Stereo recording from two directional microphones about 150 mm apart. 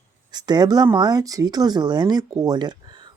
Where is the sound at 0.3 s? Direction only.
30° right (ahead or behind).